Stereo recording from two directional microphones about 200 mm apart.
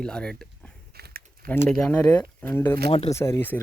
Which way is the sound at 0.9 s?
50° right (ahead or behind).